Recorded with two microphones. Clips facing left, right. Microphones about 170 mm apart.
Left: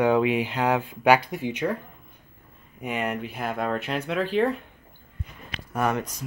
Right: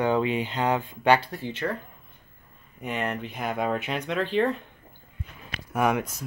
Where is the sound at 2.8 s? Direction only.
10° left (ahead or behind).